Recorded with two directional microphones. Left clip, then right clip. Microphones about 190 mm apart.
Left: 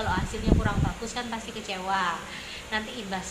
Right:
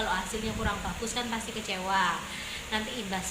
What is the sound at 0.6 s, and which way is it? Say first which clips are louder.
Speech: left 1 dB; 15° right (ahead or behind).